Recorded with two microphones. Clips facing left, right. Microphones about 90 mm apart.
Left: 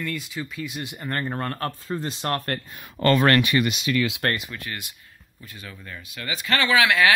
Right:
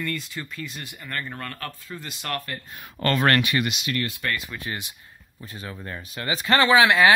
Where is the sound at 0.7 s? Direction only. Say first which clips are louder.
Left 6 dB; 20° left (ahead or behind).